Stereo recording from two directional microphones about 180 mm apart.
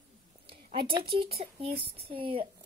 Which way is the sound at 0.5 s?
30° right (ahead or behind).